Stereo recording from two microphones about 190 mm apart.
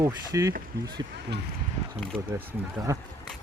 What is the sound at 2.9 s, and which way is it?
Speech, 15° right (ahead or behind).